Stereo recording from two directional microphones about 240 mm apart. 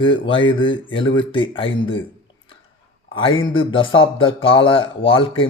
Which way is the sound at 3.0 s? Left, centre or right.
Left.